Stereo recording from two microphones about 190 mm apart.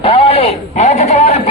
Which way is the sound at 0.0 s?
30° left (ahead or behind).